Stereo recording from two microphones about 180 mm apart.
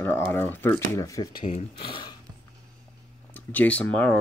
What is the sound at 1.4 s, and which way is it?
Speech, 35° left (ahead or behind).